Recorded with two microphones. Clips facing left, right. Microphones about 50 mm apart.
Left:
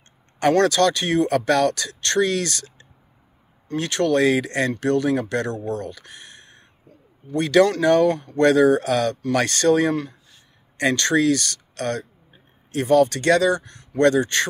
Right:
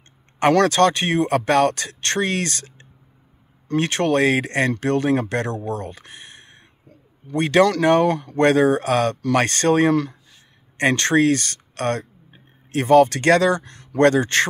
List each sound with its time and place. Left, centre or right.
0.4 s speech: right